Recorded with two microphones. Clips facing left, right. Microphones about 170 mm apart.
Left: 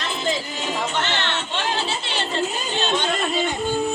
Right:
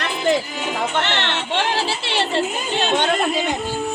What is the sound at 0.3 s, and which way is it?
Speech, 65° right (ahead or behind).